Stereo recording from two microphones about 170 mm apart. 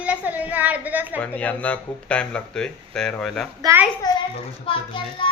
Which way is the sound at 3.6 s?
10° right (ahead or behind).